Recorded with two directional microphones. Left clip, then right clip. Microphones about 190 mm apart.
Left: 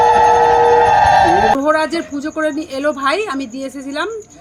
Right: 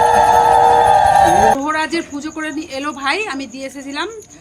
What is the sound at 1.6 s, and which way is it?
Speech, 55° left (ahead or behind).